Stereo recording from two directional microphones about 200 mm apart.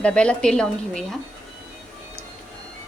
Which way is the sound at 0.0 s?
5° left (ahead or behind).